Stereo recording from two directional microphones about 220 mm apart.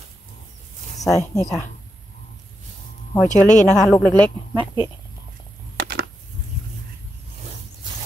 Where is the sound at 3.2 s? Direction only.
35° left (ahead or behind).